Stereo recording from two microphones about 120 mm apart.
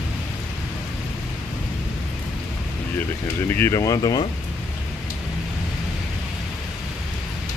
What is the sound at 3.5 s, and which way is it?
Speech, 25° left (ahead or behind).